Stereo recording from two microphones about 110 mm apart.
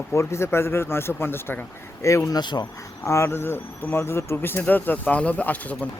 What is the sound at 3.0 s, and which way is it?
Speech, 25° left (ahead or behind).